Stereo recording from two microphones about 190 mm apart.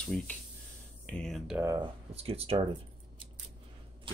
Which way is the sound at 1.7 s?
30° right (ahead or behind).